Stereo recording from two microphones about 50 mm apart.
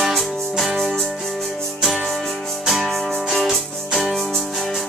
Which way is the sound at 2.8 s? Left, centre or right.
Centre.